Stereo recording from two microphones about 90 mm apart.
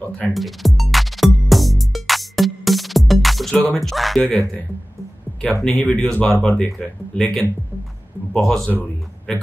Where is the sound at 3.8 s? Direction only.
Centre (ahead or behind).